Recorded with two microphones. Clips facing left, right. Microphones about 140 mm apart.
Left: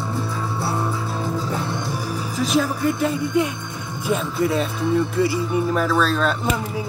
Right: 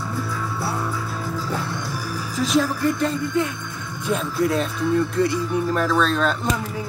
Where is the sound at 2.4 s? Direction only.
Centre (ahead or behind).